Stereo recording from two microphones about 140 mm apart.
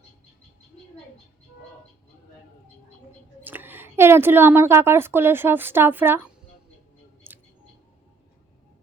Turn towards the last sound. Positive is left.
turn(degrees=-15)  # may be behind; listen again after turning